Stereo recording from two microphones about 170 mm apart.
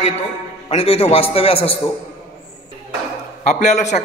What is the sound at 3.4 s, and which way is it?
Speech, 45° left (ahead or behind).